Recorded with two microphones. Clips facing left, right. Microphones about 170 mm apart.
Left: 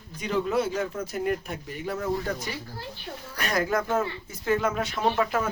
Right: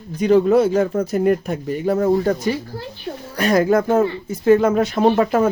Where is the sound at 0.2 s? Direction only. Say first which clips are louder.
Right 12 dB; 45° right (ahead or behind).